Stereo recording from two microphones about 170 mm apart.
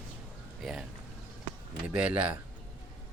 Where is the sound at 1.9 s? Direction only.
5° right (ahead or behind).